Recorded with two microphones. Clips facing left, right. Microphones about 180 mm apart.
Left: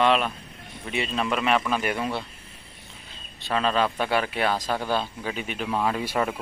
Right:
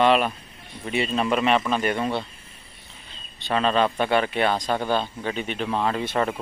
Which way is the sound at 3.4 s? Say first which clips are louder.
Right 2 dB; centre (ahead or behind).